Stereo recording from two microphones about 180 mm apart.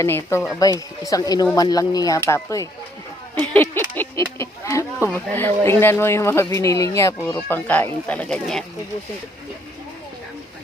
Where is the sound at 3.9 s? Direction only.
10° left (ahead or behind).